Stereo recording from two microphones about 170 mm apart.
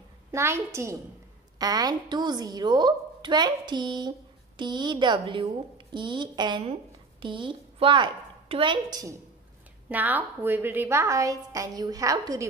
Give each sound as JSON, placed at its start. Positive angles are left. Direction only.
{"t": 0.3, "sound": "a woman's voice", "side_deg": -15}
{"t": 9.8, "sound": "a woman's voice", "side_deg": -10}